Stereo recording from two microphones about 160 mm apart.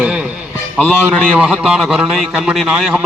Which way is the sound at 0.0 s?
5° right (ahead or behind).